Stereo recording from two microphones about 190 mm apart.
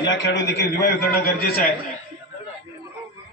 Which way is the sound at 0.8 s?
60° left (ahead or behind).